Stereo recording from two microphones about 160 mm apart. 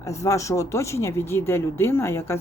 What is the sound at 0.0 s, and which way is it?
Speech, 20° left (ahead or behind).